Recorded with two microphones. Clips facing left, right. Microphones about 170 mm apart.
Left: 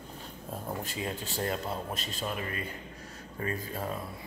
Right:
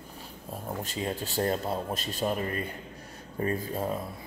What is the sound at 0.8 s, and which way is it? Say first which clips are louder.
Speech: right 3 dB; 25° right (ahead or behind).